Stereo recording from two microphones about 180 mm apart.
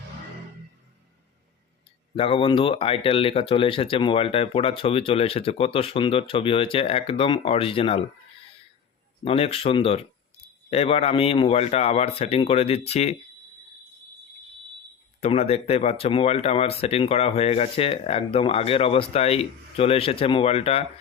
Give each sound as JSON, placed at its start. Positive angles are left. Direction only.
{"t": 2.1, "sound": "speech", "side_deg": 30}
{"t": 9.2, "sound": "speech", "side_deg": 30}
{"t": 15.2, "sound": "speech", "side_deg": 35}